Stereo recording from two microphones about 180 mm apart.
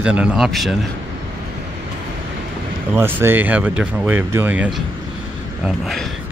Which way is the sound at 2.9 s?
15° right (ahead or behind).